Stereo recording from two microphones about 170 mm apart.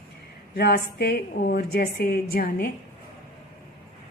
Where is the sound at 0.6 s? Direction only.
70° left (ahead or behind).